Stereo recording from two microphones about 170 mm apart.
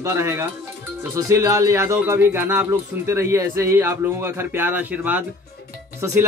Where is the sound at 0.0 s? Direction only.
15° right (ahead or behind).